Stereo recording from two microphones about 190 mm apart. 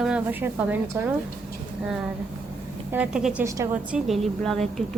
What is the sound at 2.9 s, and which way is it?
Speech, 5° right (ahead or behind).